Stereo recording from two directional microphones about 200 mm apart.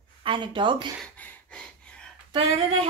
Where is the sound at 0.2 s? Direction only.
25° right (ahead or behind).